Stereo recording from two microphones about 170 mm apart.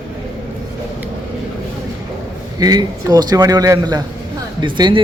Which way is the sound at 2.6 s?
25° right (ahead or behind).